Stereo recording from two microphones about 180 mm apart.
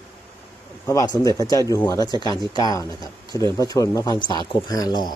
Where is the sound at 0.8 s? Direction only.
20° left (ahead or behind).